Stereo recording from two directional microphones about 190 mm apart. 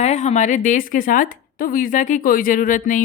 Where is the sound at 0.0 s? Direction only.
35° left (ahead or behind).